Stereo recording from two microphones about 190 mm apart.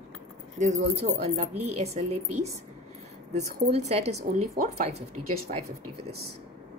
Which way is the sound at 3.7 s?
35° right (ahead or behind).